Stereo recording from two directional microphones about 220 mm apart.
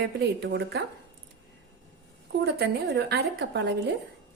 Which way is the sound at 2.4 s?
50° right (ahead or behind).